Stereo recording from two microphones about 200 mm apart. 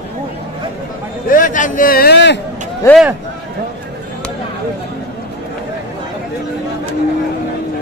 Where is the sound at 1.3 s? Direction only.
40° left (ahead or behind); by 2.3 s 55° left (ahead or behind).